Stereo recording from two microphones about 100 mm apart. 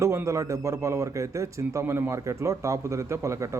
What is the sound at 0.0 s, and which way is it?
A man's voice, 30° right (ahead or behind).